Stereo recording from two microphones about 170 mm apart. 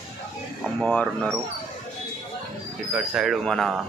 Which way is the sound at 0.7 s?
5° left (ahead or behind).